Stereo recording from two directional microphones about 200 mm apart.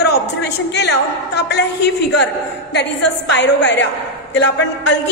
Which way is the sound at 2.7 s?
60° left (ahead or behind).